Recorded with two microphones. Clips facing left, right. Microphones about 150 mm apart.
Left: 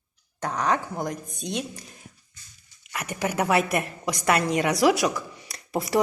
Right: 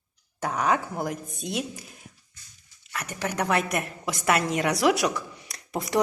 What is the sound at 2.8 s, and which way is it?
A woman's voice, 15° left (ahead or behind).